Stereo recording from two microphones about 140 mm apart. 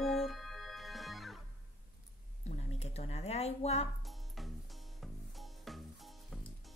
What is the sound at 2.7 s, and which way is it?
Speech, 50° left (ahead or behind).